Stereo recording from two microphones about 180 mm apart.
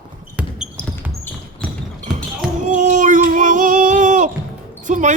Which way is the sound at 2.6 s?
45° right (ahead or behind).